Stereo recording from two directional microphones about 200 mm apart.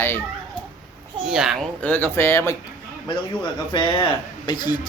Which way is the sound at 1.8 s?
10° left (ahead or behind).